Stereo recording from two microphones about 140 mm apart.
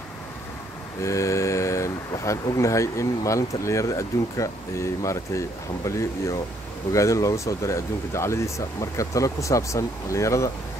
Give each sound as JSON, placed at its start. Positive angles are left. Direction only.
{"t": 1.0, "sound": "speech", "side_deg": 20}